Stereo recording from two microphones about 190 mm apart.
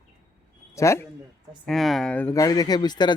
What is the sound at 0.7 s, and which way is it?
Speech, 15° left (ahead or behind).